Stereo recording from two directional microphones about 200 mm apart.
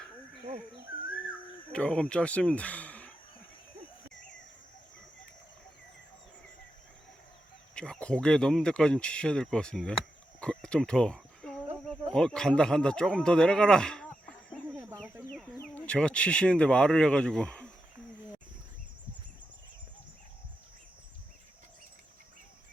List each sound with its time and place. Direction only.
0.9 s a sound: 45° left (ahead or behind)
1.7 s speech: 5° left (ahead or behind)
7.8 s speech: 5° left (ahead or behind)
10.4 s cricket: 5° left (ahead or behind)
11.9 s speech: 5° left (ahead or behind)